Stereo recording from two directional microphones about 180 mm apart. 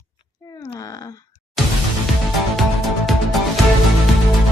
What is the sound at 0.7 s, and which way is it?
Speech, 20° left (ahead or behind).